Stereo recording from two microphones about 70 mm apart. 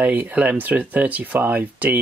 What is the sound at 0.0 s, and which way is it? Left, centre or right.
Speech, right.